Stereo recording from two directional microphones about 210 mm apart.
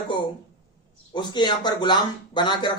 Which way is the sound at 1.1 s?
20° left (ahead or behind).